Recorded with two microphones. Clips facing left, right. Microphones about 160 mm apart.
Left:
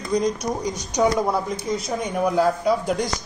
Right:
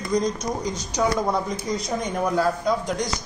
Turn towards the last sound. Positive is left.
turn(degrees=10)  # may be behind; listen again after turning